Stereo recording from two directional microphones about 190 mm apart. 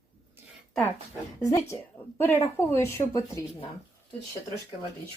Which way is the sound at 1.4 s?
15° left (ahead or behind).